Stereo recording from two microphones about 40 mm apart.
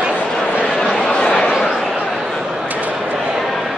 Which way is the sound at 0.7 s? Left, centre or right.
Centre.